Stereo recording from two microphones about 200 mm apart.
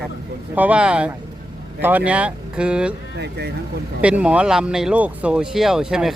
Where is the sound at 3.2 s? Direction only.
55° right (ahead or behind).